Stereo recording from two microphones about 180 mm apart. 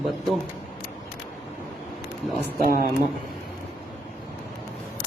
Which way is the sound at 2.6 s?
55° right (ahead or behind).